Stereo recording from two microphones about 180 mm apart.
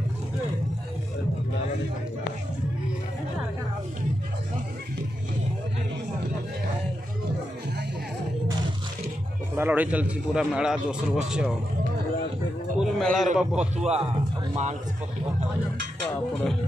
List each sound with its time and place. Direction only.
9.6 s a man's voice: 10° right (ahead or behind)
12.7 s a sound: centre (ahead or behind)
13.4 s a man's voice: 5° right (ahead or behind)
13.8 s speech: 35° right (ahead or behind)